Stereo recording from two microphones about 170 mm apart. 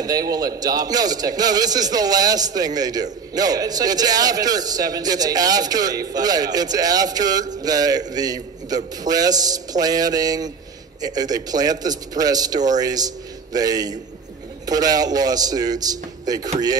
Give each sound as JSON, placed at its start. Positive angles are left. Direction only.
{"t": 0.0, "sound": "a man's voice", "side_deg": -20}